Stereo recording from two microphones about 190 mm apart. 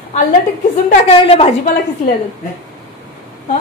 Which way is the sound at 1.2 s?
30° left (ahead or behind).